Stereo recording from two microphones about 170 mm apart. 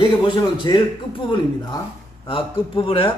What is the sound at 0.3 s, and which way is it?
Speech, 30° left (ahead or behind).